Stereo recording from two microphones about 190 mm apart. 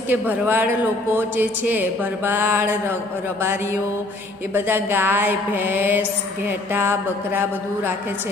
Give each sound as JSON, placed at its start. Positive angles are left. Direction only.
{"t": 0.1, "sound": "speech", "side_deg": -10}
{"t": 4.6, "sound": "speech", "side_deg": -10}